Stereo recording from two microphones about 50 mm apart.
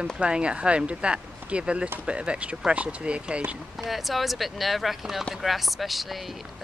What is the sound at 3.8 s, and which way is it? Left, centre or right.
Speech, centre.